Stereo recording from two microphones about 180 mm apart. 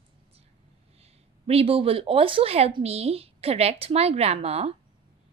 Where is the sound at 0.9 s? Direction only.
35° right (ahead or behind).